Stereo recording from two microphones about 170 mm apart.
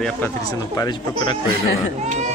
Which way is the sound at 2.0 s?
45° right (ahead or behind).